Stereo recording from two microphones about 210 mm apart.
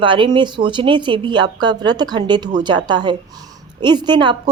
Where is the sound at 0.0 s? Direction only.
25° right (ahead or behind).